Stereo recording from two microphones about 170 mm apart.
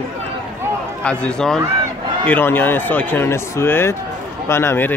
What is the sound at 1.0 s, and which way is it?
Speech, 5° left (ahead or behind).